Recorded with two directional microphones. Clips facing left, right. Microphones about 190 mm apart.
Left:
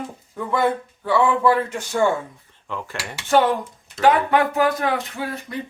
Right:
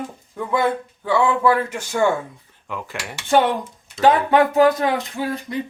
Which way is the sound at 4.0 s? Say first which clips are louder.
Right 2 dB; 20° right (ahead or behind).